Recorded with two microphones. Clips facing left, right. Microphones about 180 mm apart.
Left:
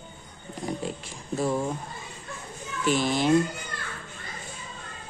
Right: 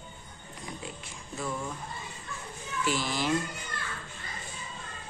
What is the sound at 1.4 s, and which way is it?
Speech, 35° left (ahead or behind).